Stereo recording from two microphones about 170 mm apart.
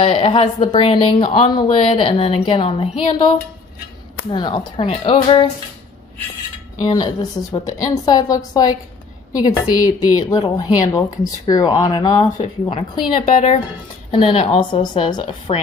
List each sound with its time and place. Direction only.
0.0 s a woman's voice: 35° left (ahead or behind)
4.3 s a woman's voice: 30° left (ahead or behind)
6.9 s a woman's voice: 25° left (ahead or behind)